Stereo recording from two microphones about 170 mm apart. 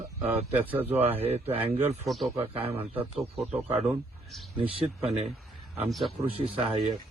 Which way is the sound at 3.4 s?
10° right (ahead or behind).